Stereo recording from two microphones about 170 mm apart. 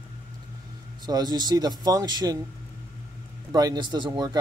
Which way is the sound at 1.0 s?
25° right (ahead or behind).